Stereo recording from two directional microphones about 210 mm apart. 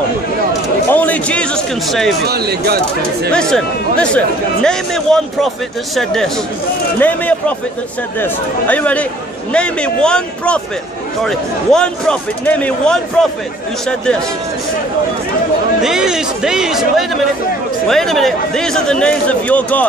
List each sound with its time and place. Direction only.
0.8 s speech: 10° left (ahead or behind)
2.2 s speech: 50° right (ahead or behind)
3.3 s speech: 5° left (ahead or behind)
15.8 s speech: 5° right (ahead or behind)